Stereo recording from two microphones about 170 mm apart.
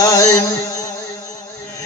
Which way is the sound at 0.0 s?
20° left (ahead or behind).